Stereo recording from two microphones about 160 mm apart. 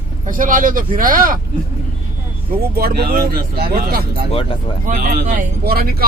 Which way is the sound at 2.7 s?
70° right (ahead or behind).